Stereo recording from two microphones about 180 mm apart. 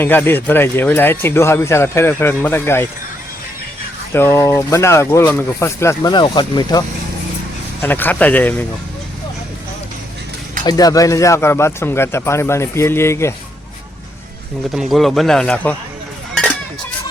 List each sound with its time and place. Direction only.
0.0 s speech: 10° left (ahead or behind)
4.1 s speech: 15° left (ahead or behind)
7.8 s speech: 10° left (ahead or behind)
10.6 s speech: 20° left (ahead or behind)
14.7 s speech: centre (ahead or behind)